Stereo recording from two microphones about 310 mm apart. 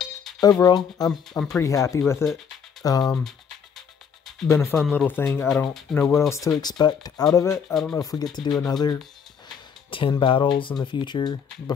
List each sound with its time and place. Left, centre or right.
0.0 s music: centre
0.4 s speech: centre
0.7 s speech: centre
4.5 s speech: centre
8.0 s speech: centre